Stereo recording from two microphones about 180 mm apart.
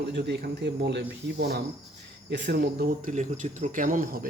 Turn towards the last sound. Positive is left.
turn(degrees=-50)  # may be behind; listen again after turning